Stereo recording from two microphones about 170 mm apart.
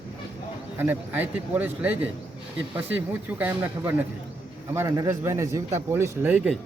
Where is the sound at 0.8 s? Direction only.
10° right (ahead or behind).